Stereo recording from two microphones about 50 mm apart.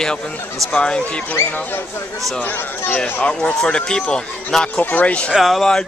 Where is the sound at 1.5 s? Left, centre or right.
Left.